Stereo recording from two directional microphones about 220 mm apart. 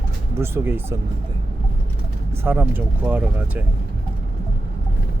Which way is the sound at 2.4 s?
10° right (ahead or behind).